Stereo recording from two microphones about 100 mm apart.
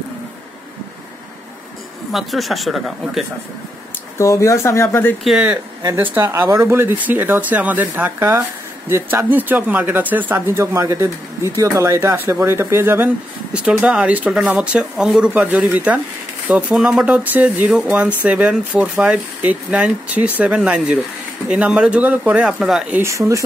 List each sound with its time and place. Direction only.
2.1 s speech: centre (ahead or behind)
4.2 s speech: 30° left (ahead or behind)
5.2 s speech: 5° right (ahead or behind)
5.9 s speech: 20° right (ahead or behind)
13.8 s speech: 15° right (ahead or behind)
17.6 s speech: 5° right (ahead or behind)
23.0 s speech: 30° right (ahead or behind)